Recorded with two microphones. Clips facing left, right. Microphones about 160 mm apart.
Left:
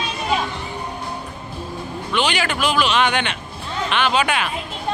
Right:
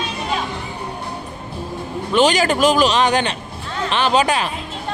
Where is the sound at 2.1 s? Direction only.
40° right (ahead or behind).